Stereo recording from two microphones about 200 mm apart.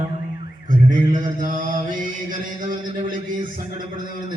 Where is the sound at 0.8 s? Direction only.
40° right (ahead or behind).